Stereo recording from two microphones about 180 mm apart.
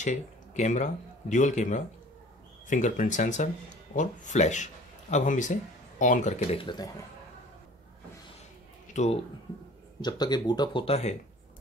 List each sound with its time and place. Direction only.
0.6 s speech: 40° left (ahead or behind)
6.6 s speech: 25° left (ahead or behind)
8.9 s speech: 40° left (ahead or behind)
10.0 s speech: 25° left (ahead or behind)